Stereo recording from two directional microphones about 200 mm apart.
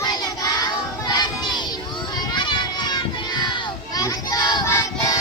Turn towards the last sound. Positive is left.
turn(degrees=15)  # may be behind; listen again after turning